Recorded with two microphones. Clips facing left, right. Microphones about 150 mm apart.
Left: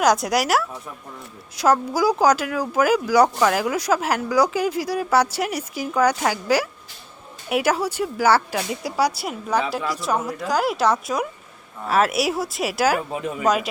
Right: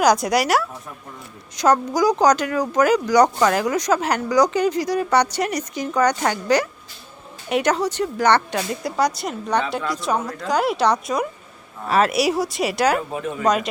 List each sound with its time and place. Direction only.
0.0 s speech: centre (ahead or behind)
13.1 s speech: 15° left (ahead or behind)
13.4 s speech: 5° left (ahead or behind)